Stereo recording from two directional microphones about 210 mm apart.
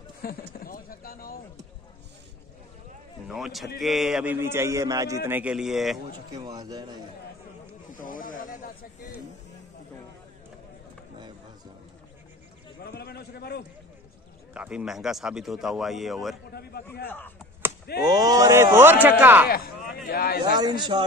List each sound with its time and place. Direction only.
0.2 s a sound: 45° left (ahead or behind)
3.3 s a man's voice: centre (ahead or behind)
6.3 s a man's voice: 20° right (ahead or behind)
8.0 s snake: 40° left (ahead or behind)
12.8 s a man's voice: 50° left (ahead or behind)
14.5 s speech: 5° right (ahead or behind)
18.0 s a man's voice: 20° right (ahead or behind)
19.5 s a sound: 45° left (ahead or behind)
20.1 s a man's voice: 45° left (ahead or behind)
20.5 s a man's voice: 20° right (ahead or behind)